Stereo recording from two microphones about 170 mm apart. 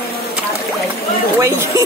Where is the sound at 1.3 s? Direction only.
20° right (ahead or behind).